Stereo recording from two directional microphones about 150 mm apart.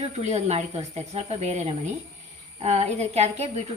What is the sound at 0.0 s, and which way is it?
A woman's voice, 45° right (ahead or behind).